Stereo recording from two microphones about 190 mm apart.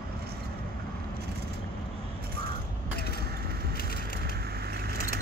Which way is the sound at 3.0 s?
55° left (ahead or behind).